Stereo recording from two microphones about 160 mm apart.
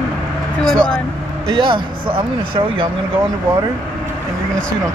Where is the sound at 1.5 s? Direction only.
30° right (ahead or behind).